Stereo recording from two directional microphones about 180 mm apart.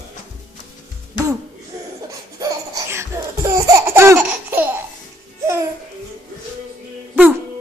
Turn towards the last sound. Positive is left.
turn(degrees=-10)  # may be behind; listen again after turning